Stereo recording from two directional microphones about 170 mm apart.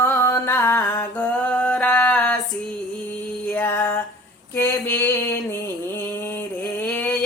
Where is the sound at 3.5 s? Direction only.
15° left (ahead or behind).